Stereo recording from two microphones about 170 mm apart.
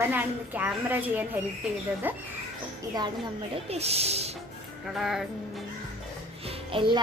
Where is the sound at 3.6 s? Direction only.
40° right (ahead or behind).